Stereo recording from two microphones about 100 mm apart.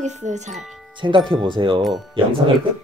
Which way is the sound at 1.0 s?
45° right (ahead or behind).